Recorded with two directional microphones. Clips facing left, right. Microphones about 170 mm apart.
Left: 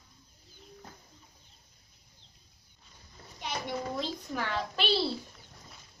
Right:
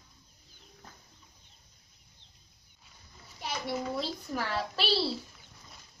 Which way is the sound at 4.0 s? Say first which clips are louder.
Even; 5° right (ahead or behind).